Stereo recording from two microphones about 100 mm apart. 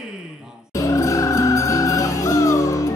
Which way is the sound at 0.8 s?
30° left (ahead or behind).